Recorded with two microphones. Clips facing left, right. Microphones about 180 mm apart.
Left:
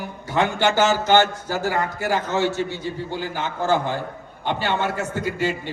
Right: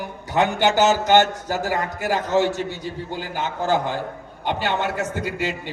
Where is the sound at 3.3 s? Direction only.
15° right (ahead or behind).